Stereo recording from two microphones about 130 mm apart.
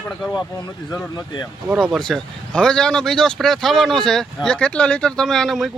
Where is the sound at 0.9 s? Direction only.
30° left (ahead or behind).